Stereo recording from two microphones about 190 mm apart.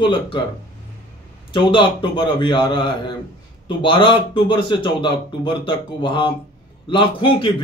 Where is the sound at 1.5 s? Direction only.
25° left (ahead or behind).